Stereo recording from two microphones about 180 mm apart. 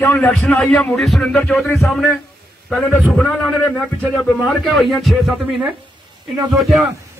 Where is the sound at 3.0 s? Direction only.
Centre (ahead or behind).